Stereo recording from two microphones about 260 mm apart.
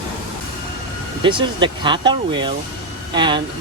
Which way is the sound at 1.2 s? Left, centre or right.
Centre.